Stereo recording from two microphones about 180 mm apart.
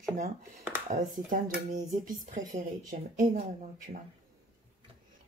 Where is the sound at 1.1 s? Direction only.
45° right (ahead or behind).